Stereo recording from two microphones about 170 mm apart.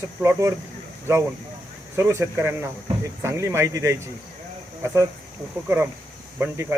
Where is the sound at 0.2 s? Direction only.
15° right (ahead or behind).